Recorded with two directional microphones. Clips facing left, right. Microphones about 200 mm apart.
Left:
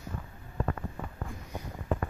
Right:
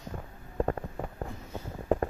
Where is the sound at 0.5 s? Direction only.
35° right (ahead or behind).